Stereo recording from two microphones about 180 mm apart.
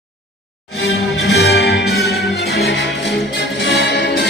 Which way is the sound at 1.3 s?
65° left (ahead or behind).